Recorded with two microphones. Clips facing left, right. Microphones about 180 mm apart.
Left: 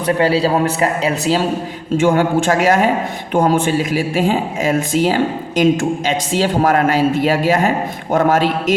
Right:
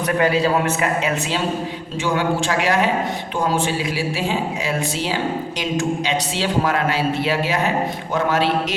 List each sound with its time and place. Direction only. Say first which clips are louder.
0.2 s a man's voice: left 2 dB; 35° left (ahead or behind)
2.0 s speech: left 6 dB; 50° left (ahead or behind)